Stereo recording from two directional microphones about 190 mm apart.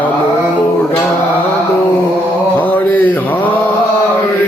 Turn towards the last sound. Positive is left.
turn(degrees=10)  # may be behind; listen again after turning